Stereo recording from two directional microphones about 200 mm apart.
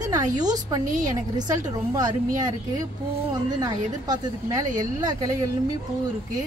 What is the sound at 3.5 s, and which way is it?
Speech, 20° right (ahead or behind).